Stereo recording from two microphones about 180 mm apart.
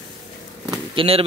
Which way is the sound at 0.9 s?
30° right (ahead or behind).